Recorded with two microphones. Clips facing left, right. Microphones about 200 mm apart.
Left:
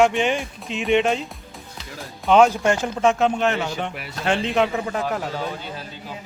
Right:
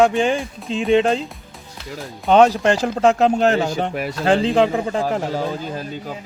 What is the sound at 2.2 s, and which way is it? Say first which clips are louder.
Speech: right 2 dB; 35° right (ahead or behind).